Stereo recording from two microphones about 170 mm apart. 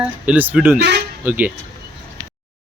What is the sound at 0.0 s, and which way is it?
Speech, 10° right (ahead or behind).